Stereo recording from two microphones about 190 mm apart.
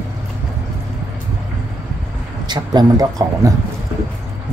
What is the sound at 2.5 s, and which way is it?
Speech, 20° right (ahead or behind).